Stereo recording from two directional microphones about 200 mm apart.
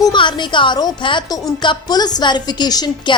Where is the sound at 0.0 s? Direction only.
25° left (ahead or behind).